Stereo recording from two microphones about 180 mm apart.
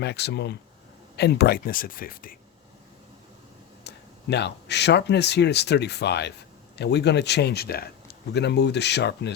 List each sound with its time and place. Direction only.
0.0 s speech: 70° left (ahead or behind); by 2.3 s 50° left (ahead or behind)
3.8 s speech: 70° left (ahead or behind)